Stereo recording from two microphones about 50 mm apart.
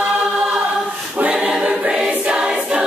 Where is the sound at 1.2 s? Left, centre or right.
Centre.